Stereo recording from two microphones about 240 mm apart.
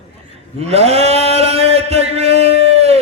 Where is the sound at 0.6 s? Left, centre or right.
Right.